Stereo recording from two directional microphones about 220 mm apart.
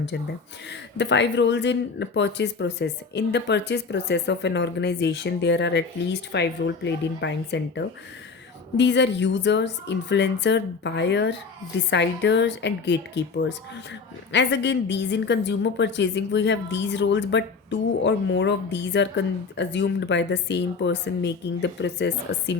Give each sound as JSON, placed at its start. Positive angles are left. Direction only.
{"t": 0.7, "sound": "a woman's voice", "side_deg": 55}